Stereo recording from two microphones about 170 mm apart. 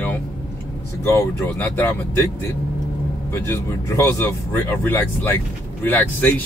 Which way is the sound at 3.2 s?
15° left (ahead or behind).